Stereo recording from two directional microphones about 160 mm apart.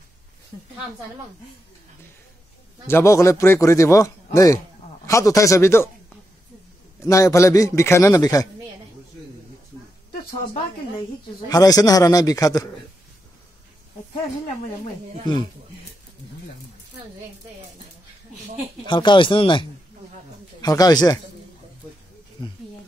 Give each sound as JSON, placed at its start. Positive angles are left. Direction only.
{"t": 2.9, "sound": "a man's voice", "side_deg": 20}
{"t": 7.0, "sound": "a man's voice", "side_deg": 20}
{"t": 11.4, "sound": "a man's voice", "side_deg": 25}
{"t": 18.9, "sound": "a man's voice", "side_deg": 30}